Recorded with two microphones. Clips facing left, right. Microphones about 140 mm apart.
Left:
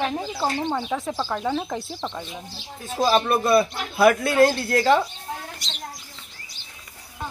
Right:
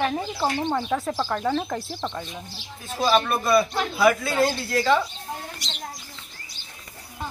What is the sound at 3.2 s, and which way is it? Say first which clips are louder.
Speech: left 2 dB; 25° left (ahead or behind).